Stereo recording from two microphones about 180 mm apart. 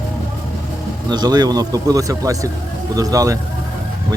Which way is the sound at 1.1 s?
20° right (ahead or behind).